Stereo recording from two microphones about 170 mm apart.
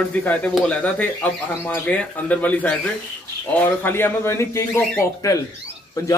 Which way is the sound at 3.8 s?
15° left (ahead or behind).